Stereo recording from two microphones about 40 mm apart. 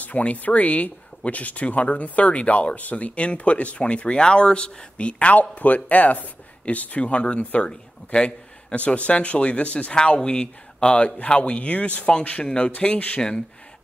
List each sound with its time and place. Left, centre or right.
0.0 s speech: left
8.1 s a man's voice: left
8.7 s speech: left